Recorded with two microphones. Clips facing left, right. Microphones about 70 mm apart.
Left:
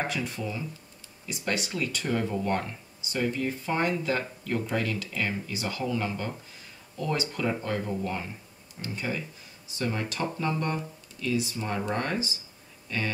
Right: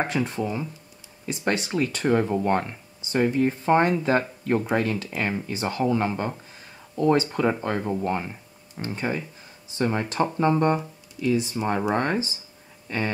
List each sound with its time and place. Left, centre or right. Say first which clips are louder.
0.0 s speech: right 6 dB; right